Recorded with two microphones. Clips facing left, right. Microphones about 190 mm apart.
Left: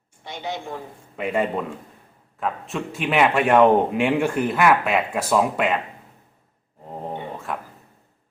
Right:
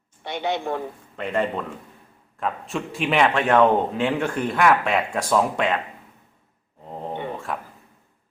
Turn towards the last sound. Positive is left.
turn(degrees=0)  # may be behind; listen again after turning